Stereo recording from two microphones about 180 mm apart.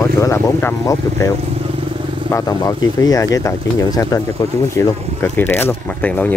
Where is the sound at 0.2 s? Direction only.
15° left (ahead or behind).